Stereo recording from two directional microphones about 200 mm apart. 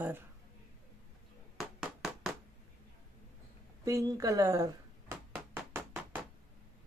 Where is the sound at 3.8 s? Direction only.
15° right (ahead or behind).